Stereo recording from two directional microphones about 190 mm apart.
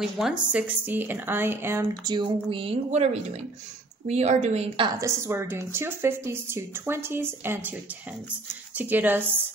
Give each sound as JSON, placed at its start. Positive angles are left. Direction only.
{"t": 0.0, "sound": "a woman's voice", "side_deg": -5}
{"t": 4.9, "sound": "speech", "side_deg": -15}